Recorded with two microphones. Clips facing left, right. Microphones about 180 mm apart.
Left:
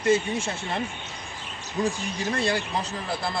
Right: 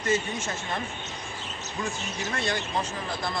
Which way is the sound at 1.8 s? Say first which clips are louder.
Left 6 dB; 35° left (ahead or behind).